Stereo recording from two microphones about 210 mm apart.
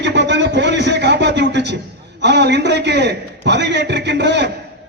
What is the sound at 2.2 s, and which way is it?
A man's voice, 55° right (ahead or behind).